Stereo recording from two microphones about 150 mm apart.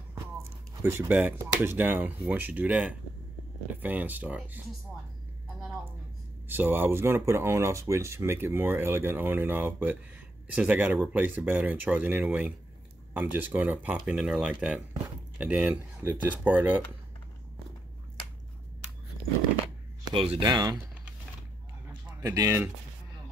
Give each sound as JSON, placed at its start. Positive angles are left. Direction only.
{"t": 0.1, "sound": "speech", "side_deg": -15}
{"t": 6.5, "sound": "speech", "side_deg": -15}
{"t": 20.1, "sound": "speech", "side_deg": -35}
{"t": 22.2, "sound": "speech", "side_deg": -20}